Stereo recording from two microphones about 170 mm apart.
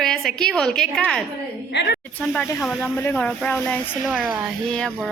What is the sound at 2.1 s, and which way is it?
Speech, 5° left (ahead or behind).